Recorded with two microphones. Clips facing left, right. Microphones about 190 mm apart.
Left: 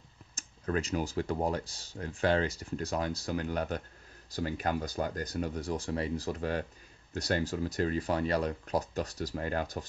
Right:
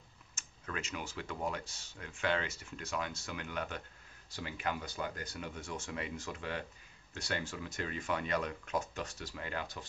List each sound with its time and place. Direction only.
0.4 s speech: 35° left (ahead or behind)